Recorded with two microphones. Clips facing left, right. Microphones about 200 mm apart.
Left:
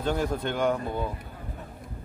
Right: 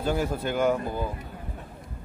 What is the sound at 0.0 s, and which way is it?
Speech, 5° right (ahead or behind).